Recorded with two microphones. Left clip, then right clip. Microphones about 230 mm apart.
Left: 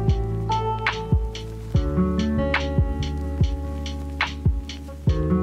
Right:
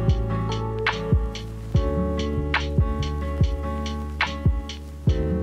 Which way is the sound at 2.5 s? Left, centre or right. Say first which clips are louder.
Right 1 dB; centre.